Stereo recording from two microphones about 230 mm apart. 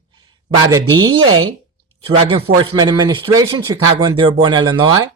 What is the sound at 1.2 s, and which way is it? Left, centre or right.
Speech, right.